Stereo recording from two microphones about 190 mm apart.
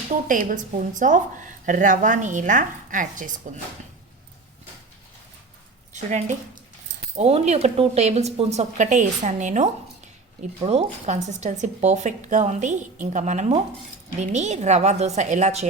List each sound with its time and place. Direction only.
0.1 s a woman's voice: 45° right (ahead or behind)
5.9 s a woman's voice: 40° right (ahead or behind)